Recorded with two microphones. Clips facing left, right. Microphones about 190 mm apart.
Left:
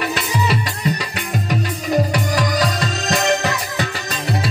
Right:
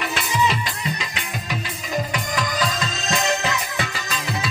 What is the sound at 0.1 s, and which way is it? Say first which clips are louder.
Music: left 2 dB; 35° left (ahead or behind).